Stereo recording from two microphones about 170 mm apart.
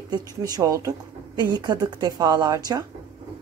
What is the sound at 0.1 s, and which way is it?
Speech, 20° right (ahead or behind).